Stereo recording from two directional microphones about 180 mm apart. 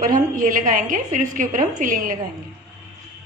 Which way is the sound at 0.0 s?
45° right (ahead or behind).